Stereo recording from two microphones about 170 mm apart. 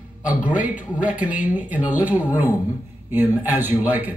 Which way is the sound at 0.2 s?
10° right (ahead or behind).